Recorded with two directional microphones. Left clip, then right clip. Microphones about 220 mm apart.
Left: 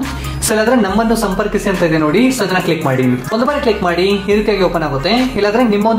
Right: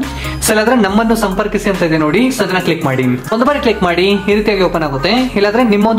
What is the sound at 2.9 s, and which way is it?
Speech, 15° right (ahead or behind).